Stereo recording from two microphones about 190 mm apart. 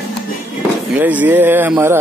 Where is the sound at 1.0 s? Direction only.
10° right (ahead or behind).